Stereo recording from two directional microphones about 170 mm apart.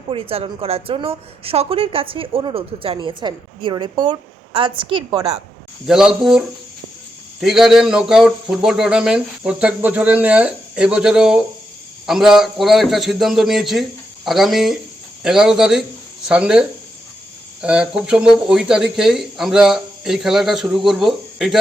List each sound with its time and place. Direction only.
0.1 s a woman's voice: 35° right (ahead or behind)
5.9 s speech: 5° right (ahead or behind)
7.4 s speech: centre (ahead or behind)